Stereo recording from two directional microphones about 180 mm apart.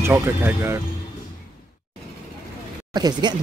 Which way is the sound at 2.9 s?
25° right (ahead or behind).